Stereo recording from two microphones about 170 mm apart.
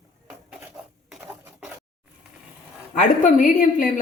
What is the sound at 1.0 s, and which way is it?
Dishes, 5° right (ahead or behind).